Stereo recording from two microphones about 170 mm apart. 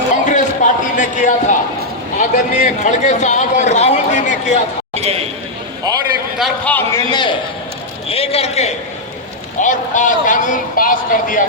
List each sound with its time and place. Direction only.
0.3 s a sound: 45° left (ahead or behind)
2.1 s a man's voice: 50° left (ahead or behind)
6.7 s a man's voice: 10° left (ahead or behind)
7.1 s a man's voice: 25° left (ahead or behind); by 11.4 s 55° left (ahead or behind)